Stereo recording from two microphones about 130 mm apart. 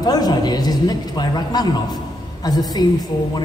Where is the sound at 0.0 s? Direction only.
30° left (ahead or behind).